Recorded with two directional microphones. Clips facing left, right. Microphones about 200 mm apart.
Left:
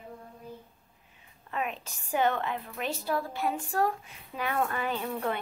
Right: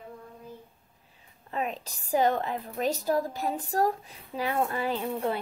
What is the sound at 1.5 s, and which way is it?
Speech, 35° right (ahead or behind).